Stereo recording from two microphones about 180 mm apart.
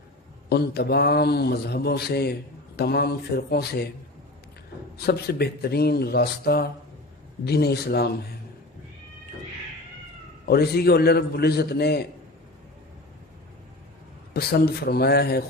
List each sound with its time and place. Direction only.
0.5 s a man's voice: 60° left (ahead or behind)
5.0 s a man's voice: 65° left (ahead or behind)
10.4 s a man's voice: 60° left (ahead or behind)
14.3 s a man's voice: 60° left (ahead or behind)